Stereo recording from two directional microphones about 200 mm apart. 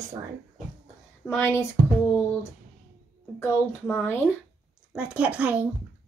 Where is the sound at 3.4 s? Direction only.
10° left (ahead or behind).